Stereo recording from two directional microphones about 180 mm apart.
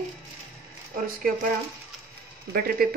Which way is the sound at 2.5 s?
55° right (ahead or behind).